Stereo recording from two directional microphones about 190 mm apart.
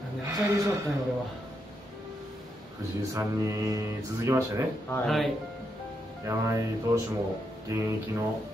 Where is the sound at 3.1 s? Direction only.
15° right (ahead or behind).